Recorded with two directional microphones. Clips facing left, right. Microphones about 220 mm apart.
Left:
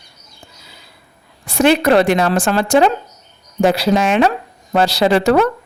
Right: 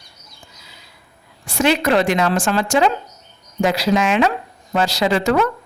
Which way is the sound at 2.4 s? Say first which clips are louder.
Left 4 dB; 60° left (ahead or behind).